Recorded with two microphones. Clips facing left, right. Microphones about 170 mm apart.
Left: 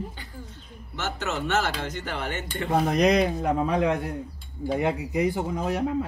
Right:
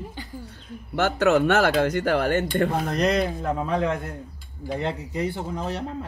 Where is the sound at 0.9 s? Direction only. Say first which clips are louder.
Right 11 dB; 55° right (ahead or behind).